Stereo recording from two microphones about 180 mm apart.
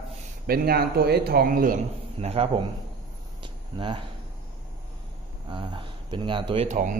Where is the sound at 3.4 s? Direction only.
25° right (ahead or behind).